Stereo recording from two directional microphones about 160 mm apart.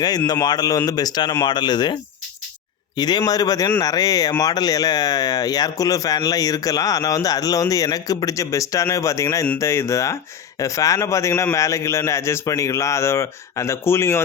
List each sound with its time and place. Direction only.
0.3 s speech: 25° left (ahead or behind)